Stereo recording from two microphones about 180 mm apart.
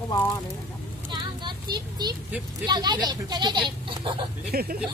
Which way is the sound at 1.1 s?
25° right (ahead or behind).